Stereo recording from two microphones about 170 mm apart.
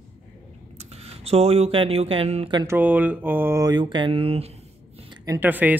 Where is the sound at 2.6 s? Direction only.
10° right (ahead or behind); by 4.5 s 35° right (ahead or behind).